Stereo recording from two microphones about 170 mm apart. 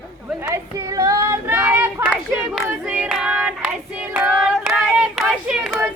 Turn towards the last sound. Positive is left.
turn(degrees=0)  # may be behind; listen again after turning